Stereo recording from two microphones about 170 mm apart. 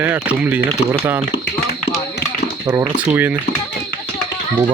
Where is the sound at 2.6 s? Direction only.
15° right (ahead or behind).